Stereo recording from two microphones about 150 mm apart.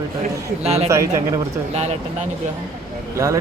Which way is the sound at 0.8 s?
20° right (ahead or behind).